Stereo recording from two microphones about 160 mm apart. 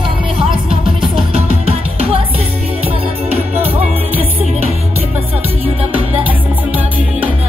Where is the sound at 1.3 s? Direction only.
40° right (ahead or behind).